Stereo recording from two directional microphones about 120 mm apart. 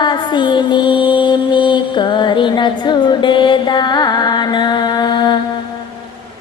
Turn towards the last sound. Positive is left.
turn(degrees=35)  # may be behind; listen again after turning